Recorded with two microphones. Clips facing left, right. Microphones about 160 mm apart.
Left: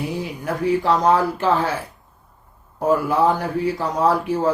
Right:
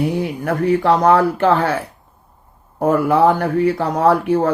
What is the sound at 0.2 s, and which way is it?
Speech, 60° right (ahead or behind).